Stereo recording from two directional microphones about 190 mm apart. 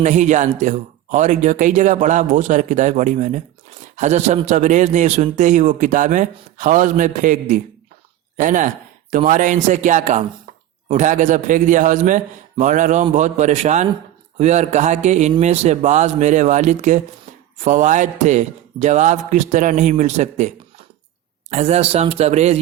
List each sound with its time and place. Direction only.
0.0 s a man's voice: 40° right (ahead or behind)
21.5 s a man's voice: 35° right (ahead or behind)